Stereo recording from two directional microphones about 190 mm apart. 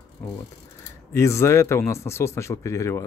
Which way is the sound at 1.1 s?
15° left (ahead or behind).